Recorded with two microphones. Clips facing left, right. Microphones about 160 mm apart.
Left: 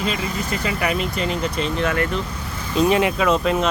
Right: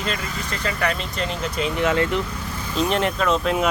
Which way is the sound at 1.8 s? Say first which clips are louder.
Right 3 dB; 20° right (ahead or behind).